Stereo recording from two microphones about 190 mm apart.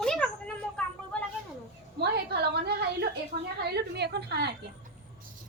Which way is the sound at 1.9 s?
60° right (ahead or behind).